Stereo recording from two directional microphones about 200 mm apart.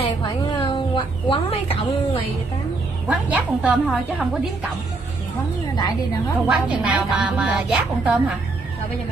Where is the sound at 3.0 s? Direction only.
5° right (ahead or behind).